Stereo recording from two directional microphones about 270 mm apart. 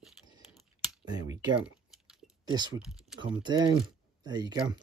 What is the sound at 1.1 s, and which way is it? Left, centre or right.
Speech, centre.